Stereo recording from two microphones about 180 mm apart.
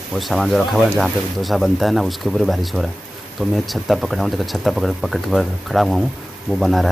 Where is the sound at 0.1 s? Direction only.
Centre (ahead or behind).